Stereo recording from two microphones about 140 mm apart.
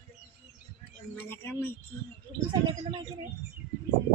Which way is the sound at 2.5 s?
35° right (ahead or behind).